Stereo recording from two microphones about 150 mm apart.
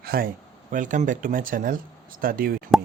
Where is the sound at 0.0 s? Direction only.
90° right.